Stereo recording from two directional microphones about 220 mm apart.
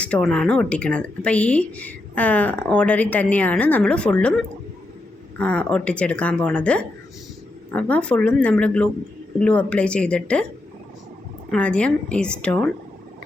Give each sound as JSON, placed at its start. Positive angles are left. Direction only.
{"t": 0.0, "sound": "speech", "side_deg": 5}
{"t": 5.4, "sound": "speech", "side_deg": 5}
{"t": 11.5, "sound": "speech", "side_deg": 5}